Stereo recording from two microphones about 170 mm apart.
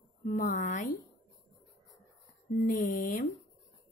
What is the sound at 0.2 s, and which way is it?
Speech, 55° left (ahead or behind).